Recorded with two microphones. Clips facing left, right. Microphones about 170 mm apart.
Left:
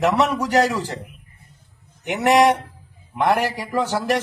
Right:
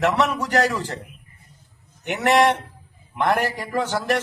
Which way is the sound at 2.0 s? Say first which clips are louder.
Left 2 dB; 10° left (ahead or behind).